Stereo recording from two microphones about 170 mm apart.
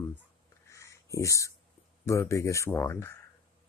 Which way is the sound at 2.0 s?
20° left (ahead or behind).